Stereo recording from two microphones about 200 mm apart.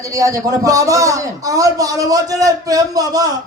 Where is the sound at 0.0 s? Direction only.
15° right (ahead or behind).